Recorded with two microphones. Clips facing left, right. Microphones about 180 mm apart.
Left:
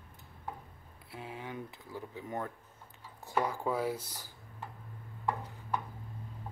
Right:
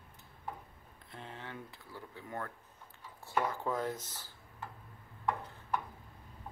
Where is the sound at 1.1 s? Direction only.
10° left (ahead or behind).